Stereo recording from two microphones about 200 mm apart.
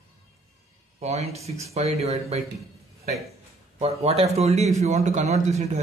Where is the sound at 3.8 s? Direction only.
30° right (ahead or behind).